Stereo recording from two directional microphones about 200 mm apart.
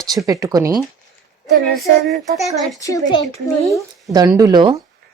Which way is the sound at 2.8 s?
15° left (ahead or behind).